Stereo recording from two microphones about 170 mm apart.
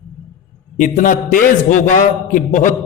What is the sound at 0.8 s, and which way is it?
A man's voice, 50° left (ahead or behind).